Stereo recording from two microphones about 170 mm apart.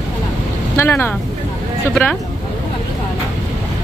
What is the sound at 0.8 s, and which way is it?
Speech, 15° left (ahead or behind).